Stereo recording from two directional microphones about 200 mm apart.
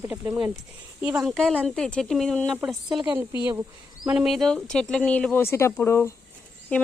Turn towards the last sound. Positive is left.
turn(degrees=5)  # may be behind; listen again after turning